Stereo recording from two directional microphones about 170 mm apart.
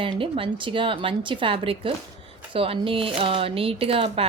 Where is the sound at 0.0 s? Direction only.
30° right (ahead or behind).